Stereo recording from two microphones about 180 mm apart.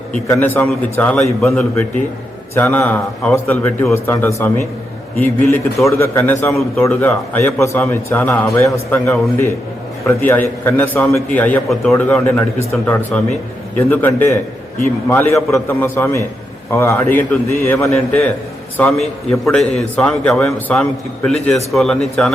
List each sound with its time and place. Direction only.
0.3 s a man's voice: 10° left (ahead or behind)
6.5 s a man's voice: centre (ahead or behind)
6.8 s a man's voice: 15° left (ahead or behind)
10.2 s a man's voice: 10° left (ahead or behind)